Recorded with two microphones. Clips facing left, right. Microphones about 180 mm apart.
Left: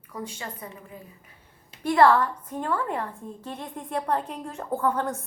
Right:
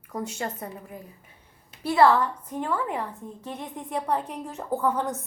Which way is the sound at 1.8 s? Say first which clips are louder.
Left 1 dB; 5° right (ahead or behind).